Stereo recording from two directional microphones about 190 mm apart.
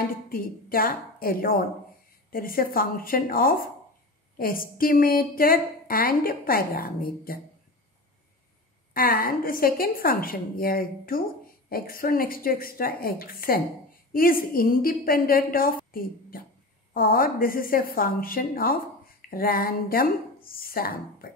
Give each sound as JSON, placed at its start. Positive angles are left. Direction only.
{"t": 0.3, "sound": "a woman's voice", "side_deg": 50}
{"t": 8.9, "sound": "a woman's voice", "side_deg": 50}